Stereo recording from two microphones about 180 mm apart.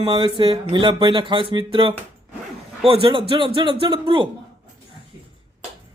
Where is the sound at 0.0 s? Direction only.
25° right (ahead or behind).